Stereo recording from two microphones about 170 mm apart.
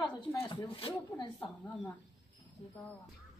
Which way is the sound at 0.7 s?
30° left (ahead or behind).